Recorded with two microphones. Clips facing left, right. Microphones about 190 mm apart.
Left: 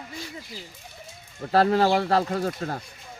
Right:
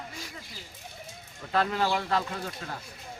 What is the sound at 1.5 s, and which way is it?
Speech, 40° left (ahead or behind).